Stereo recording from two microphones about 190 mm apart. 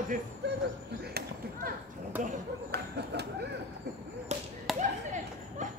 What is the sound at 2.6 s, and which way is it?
Speech, 60° right (ahead or behind).